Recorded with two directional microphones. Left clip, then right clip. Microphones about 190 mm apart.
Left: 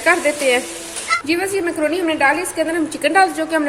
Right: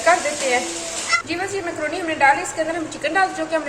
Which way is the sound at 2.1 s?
45° left (ahead or behind).